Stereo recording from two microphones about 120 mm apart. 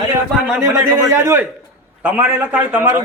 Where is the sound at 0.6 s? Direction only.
25° right (ahead or behind).